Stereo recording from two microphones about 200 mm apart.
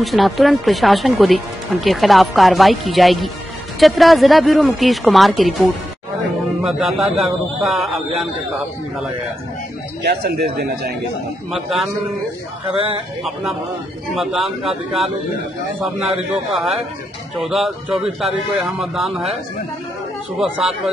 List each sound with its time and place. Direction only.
0.0 s speech: centre (ahead or behind)
10.0 s speech: 50° right (ahead or behind)
12.6 s speech: 25° right (ahead or behind)
13.2 s speech: centre (ahead or behind)
16.5 s speech: centre (ahead or behind)
20.3 s speech: 5° right (ahead or behind)